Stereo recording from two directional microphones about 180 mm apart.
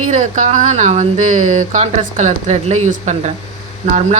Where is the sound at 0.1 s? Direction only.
45° right (ahead or behind).